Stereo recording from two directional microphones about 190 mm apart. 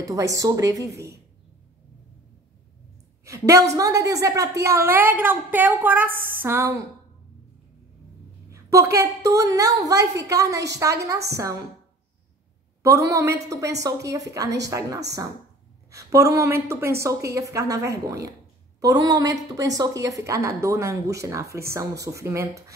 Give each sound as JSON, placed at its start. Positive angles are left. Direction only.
{"t": 0.0, "sound": "a woman's voice", "side_deg": -15}
{"t": 3.3, "sound": "a woman's voice", "side_deg": -15}
{"t": 8.5, "sound": "a sound", "side_deg": -15}
{"t": 8.9, "sound": "a woman's voice", "side_deg": -15}
{"t": 12.8, "sound": "a woman's voice", "side_deg": -15}